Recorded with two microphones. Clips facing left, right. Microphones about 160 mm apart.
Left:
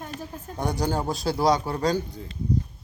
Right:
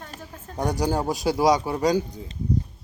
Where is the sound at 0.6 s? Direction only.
15° right (ahead or behind).